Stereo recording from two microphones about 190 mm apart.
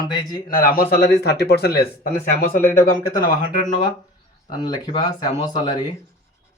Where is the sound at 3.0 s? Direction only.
20° left (ahead or behind).